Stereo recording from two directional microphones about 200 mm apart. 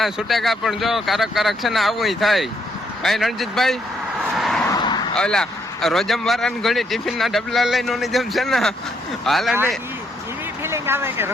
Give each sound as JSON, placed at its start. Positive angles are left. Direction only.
{"t": 0.0, "sound": "speech", "side_deg": 0}
{"t": 4.2, "sound": "vehicle", "side_deg": 0}
{"t": 4.6, "sound": "vehicle", "side_deg": 20}
{"t": 5.1, "sound": "speech", "side_deg": 5}
{"t": 10.6, "sound": "a sound", "side_deg": -10}